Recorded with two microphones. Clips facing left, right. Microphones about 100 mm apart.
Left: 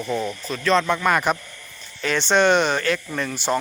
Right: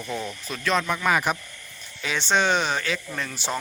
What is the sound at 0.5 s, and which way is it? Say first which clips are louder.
Speech: left 5 dB; 5° right (ahead or behind).